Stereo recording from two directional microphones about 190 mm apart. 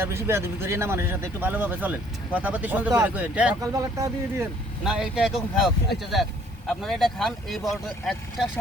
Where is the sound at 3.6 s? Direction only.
20° right (ahead or behind).